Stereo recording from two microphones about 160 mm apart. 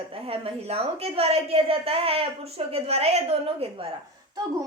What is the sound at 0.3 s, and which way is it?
A woman's voice, 40° right (ahead or behind).